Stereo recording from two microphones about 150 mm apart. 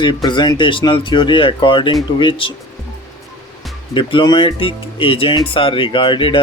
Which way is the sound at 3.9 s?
35° left (ahead or behind).